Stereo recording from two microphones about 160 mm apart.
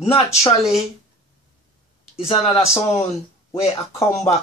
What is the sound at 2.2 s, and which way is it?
Speech, 35° left (ahead or behind).